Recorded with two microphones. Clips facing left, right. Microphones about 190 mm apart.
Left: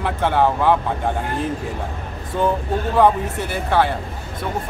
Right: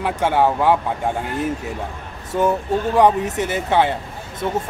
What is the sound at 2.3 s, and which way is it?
Speech, 10° right (ahead or behind).